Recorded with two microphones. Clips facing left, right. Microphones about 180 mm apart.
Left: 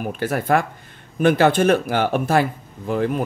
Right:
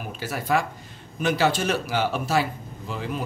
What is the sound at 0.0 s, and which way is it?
Speech, 55° left (ahead or behind).